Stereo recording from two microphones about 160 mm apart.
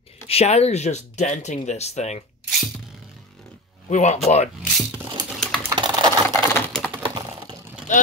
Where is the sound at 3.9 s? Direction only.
45° left (ahead or behind).